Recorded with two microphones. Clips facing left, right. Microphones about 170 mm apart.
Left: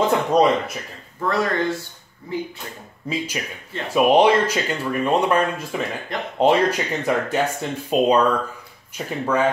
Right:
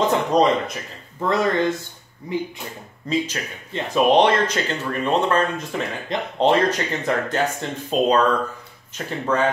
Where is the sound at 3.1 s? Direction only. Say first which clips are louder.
Right 3 dB; 5° left (ahead or behind).